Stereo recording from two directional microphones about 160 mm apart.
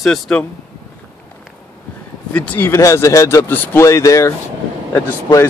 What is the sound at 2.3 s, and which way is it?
Speech, 10° left (ahead or behind).